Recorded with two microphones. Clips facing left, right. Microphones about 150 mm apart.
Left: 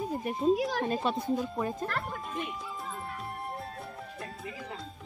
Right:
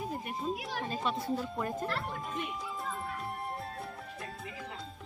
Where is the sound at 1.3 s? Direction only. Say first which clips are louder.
Left 3 dB; 15° left (ahead or behind).